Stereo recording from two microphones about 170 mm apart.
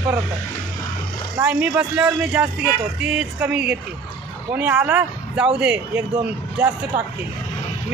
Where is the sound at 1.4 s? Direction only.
10° right (ahead or behind).